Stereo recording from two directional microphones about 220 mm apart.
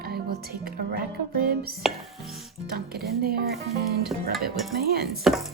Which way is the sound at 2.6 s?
45° right (ahead or behind).